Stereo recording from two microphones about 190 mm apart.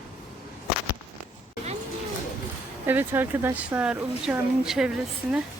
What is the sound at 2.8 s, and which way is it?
Speech, 10° right (ahead or behind).